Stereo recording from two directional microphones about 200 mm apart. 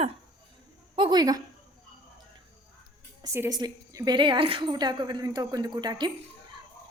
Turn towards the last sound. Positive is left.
turn(degrees=-20)  # may be behind; listen again after turning